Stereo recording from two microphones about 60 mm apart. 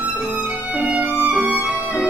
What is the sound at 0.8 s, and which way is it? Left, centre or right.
Music, right.